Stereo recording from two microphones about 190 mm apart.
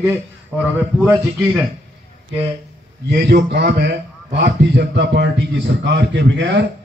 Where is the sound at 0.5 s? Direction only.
5° left (ahead or behind).